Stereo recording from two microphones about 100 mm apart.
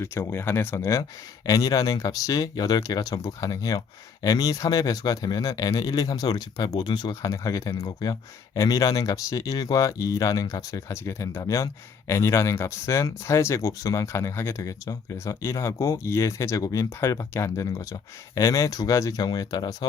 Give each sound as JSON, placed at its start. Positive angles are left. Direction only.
{"t": 0.0, "sound": "speech", "side_deg": 25}